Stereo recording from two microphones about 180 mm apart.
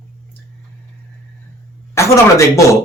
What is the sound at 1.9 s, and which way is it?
Speech, 15° left (ahead or behind).